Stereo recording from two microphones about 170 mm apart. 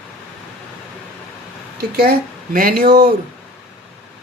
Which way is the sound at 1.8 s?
65° right (ahead or behind).